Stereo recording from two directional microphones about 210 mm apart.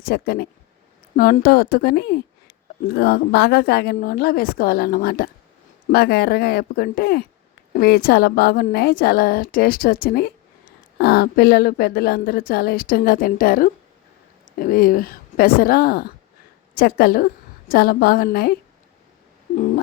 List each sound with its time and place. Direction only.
0.1 s speech: 50° left (ahead or behind)